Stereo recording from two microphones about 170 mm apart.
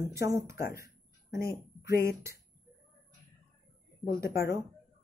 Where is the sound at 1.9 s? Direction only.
15° right (ahead or behind).